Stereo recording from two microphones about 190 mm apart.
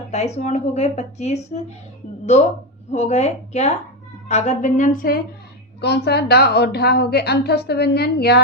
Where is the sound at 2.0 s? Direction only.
40° left (ahead or behind).